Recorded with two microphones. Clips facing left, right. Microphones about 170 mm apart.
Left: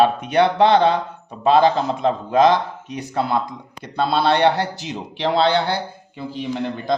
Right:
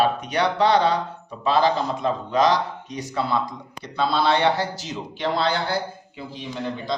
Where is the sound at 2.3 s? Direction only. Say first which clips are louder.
Left 4 dB; 55° left (ahead or behind).